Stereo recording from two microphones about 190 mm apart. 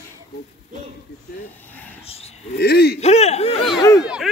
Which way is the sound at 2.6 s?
60° left (ahead or behind).